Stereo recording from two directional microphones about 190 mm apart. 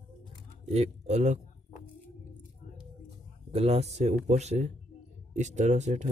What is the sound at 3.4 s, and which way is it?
Speech, 35° right (ahead or behind).